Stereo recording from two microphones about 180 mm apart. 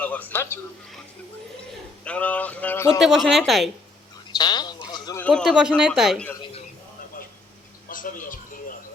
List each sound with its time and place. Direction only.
0.0 s a man's voice: 10° left (ahead or behind)
2.0 s speech: 10° left (ahead or behind)
3.0 s speech: centre (ahead or behind)
4.3 s bird: 25° left (ahead or behind)
5.2 s speech: 5° left (ahead or behind)
7.9 s a sound: 50° left (ahead or behind)